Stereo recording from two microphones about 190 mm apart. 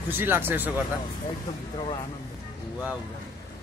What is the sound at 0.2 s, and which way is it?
Speech, 10° right (ahead or behind).